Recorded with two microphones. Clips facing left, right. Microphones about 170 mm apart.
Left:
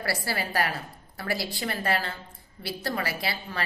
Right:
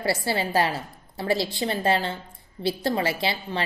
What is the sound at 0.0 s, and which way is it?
A woman's voice, 25° right (ahead or behind).